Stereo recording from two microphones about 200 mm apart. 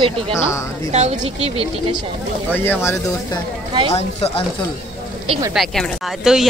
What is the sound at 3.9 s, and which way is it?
Speech, 30° left (ahead or behind).